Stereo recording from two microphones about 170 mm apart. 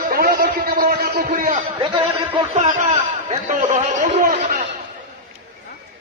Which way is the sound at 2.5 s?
40° right (ahead or behind).